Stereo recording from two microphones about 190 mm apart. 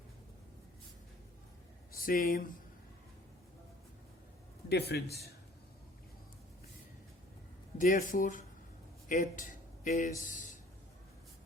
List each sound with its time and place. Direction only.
2.0 s speech: 50° left (ahead or behind)
4.7 s a man's voice: 60° left (ahead or behind)
7.8 s speech: 50° left (ahead or behind)